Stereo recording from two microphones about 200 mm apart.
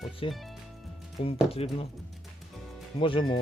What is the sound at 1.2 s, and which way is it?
Speech, 30° left (ahead or behind).